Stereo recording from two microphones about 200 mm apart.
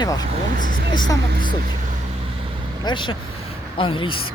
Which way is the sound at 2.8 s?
25° left (ahead or behind).